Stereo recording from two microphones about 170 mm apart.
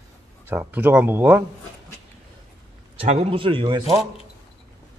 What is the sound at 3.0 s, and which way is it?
Speech, 35° right (ahead or behind).